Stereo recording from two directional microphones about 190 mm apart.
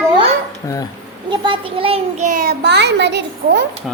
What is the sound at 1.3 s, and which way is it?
Child singing, 25° right (ahead or behind).